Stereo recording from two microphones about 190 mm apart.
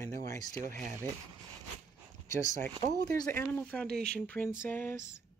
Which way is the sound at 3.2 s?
10° left (ahead or behind).